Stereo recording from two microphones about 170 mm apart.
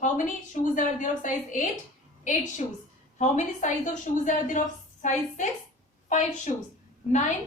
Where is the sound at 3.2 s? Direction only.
45° left (ahead or behind).